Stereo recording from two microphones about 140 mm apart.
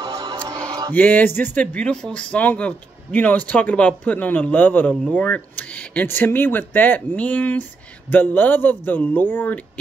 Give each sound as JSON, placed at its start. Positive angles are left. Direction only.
{"t": 0.0, "sound": "music", "side_deg": -30}
{"t": 0.7, "sound": "a sound", "side_deg": -25}
{"t": 0.9, "sound": "speech", "side_deg": 10}